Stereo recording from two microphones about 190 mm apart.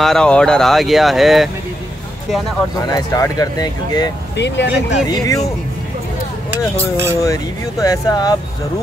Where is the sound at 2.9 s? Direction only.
20° left (ahead or behind).